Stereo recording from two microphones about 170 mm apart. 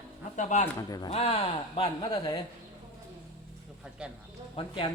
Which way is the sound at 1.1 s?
35° left (ahead or behind).